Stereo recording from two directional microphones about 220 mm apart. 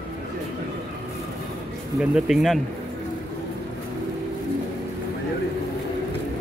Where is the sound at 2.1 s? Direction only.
Centre (ahead or behind).